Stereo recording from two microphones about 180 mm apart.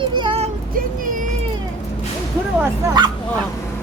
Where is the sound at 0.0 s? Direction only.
30° right (ahead or behind).